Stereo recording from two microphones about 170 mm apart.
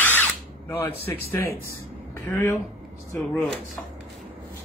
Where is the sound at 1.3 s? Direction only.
15° left (ahead or behind).